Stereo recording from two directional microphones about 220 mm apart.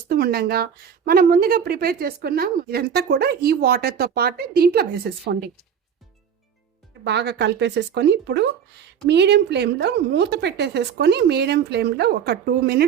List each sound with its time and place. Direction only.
0.1 s a woman's voice: 45° right (ahead or behind)
7.0 s a woman's voice: 50° right (ahead or behind)